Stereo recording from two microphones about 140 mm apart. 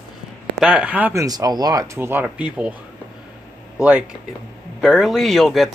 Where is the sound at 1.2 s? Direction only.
25° right (ahead or behind); by 2.7 s 10° right (ahead or behind).